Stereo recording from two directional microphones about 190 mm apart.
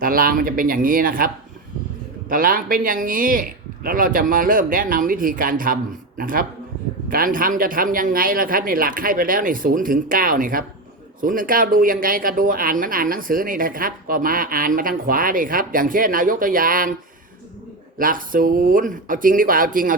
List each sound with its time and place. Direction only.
0.0 s speech: 50° right (ahead or behind)
2.3 s speech: 45° right (ahead or behind)
17.9 s speech: 45° right (ahead or behind)